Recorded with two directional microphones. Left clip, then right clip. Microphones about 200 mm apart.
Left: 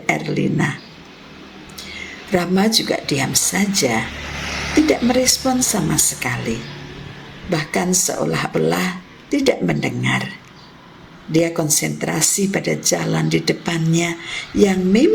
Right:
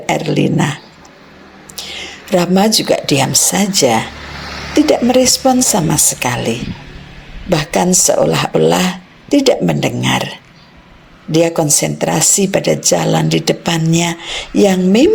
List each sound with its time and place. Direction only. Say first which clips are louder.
0.0 s speech: right 5 dB; 45° right (ahead or behind)
4.5 s a sound: right 3 dB; 10° left (ahead or behind)
4.9 s speech: right 8 dB; 40° right (ahead or behind)